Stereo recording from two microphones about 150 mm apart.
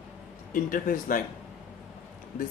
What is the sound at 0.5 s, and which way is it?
Speech, 65° left (ahead or behind).